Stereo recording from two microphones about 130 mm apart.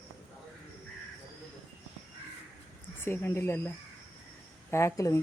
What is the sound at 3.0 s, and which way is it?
Speech, 20° left (ahead or behind).